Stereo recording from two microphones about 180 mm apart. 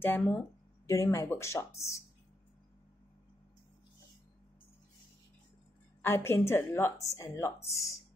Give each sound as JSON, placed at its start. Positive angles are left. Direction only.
{"t": 0.0, "sound": "speech", "side_deg": 10}
{"t": 6.0, "sound": "speech", "side_deg": 15}